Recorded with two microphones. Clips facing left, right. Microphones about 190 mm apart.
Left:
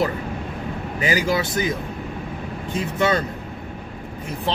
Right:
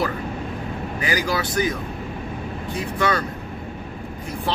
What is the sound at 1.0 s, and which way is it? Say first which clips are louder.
Speech: left 3 dB; 20° left (ahead or behind).